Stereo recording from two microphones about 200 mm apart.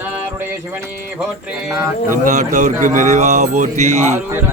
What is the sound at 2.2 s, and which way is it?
Speech, 40° right (ahead or behind).